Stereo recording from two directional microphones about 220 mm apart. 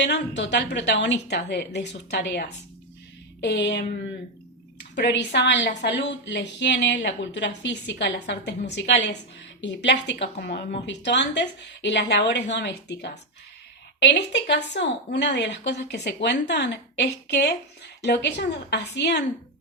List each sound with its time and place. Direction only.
0.0 s a woman's voice: 50° left (ahead or behind)